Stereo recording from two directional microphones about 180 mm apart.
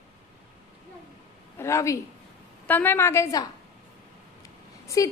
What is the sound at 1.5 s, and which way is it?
A woman's voice, 15° left (ahead or behind).